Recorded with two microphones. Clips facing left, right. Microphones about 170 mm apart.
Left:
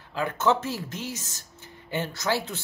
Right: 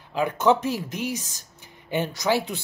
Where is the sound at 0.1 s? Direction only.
15° right (ahead or behind).